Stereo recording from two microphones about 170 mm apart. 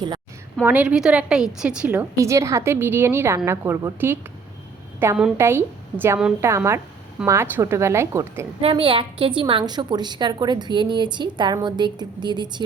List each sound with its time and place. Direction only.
0.6 s a woman's voice: 10° right (ahead or behind)
2.1 s a woman's voice: 15° right (ahead or behind)
8.6 s a woman's voice: 30° right (ahead or behind)